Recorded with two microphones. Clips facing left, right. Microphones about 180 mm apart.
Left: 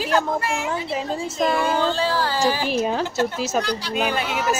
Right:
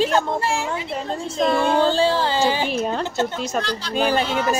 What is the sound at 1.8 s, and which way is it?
Speech, 30° right (ahead or behind).